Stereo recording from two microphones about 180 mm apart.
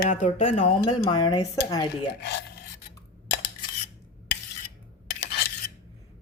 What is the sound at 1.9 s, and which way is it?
Speech, 70° left (ahead or behind).